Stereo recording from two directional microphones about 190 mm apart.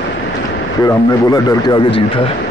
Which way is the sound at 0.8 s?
20° left (ahead or behind).